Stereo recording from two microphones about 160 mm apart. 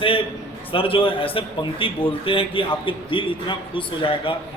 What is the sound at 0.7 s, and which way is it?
A man's voice, 35° left (ahead or behind).